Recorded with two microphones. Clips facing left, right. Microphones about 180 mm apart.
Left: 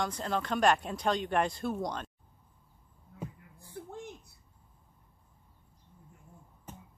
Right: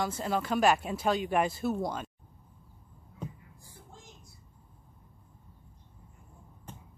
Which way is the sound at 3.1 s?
60° left (ahead or behind).